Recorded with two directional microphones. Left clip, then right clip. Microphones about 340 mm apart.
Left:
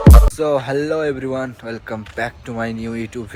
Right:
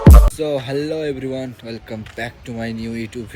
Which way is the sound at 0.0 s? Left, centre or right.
Centre.